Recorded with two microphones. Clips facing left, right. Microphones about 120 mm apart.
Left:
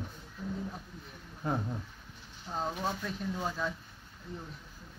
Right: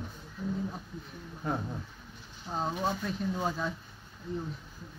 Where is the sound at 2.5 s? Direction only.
30° right (ahead or behind).